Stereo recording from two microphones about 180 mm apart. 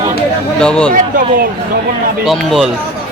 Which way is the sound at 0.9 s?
50° right (ahead or behind).